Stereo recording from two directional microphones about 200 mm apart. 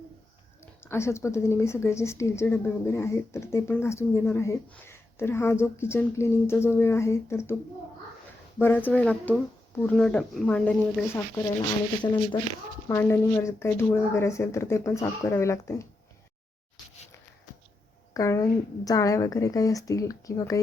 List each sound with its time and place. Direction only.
0.6 s speech: 10° left (ahead or behind)
8.5 s speech: 10° left (ahead or behind)
12.9 s speech: 15° left (ahead or behind)
18.1 s speech: 15° left (ahead or behind)